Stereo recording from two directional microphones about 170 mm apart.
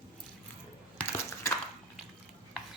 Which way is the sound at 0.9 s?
15° left (ahead or behind).